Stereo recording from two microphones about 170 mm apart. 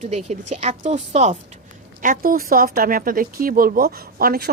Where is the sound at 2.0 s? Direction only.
55° right (ahead or behind).